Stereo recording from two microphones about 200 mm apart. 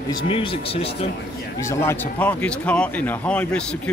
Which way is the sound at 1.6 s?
10° left (ahead or behind).